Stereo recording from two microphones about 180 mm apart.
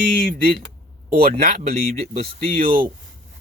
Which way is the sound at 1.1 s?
55° right (ahead or behind).